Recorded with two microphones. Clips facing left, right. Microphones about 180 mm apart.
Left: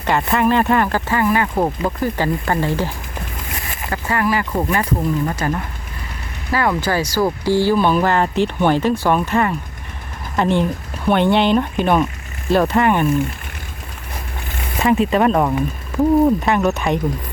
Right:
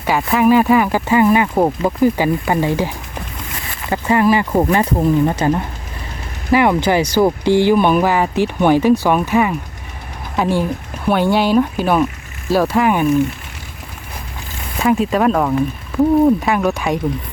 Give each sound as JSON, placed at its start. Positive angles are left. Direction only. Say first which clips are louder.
{"t": 0.0, "sound": "speech", "louder": "right 2 dB", "side_deg": -5}
{"t": 14.8, "sound": "speech", "louder": "even", "side_deg": 0}